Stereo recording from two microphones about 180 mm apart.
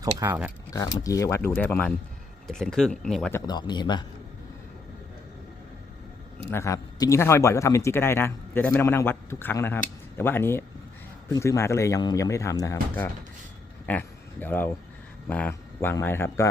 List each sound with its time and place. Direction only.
0.7 s speech: 20° left (ahead or behind); by 3.3 s 5° left (ahead or behind)
3.3 s speech: 25° left (ahead or behind)
6.5 s speech: 15° left (ahead or behind)